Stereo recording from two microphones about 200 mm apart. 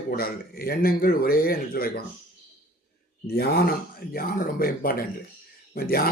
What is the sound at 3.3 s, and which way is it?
A man's voice, 50° left (ahead or behind).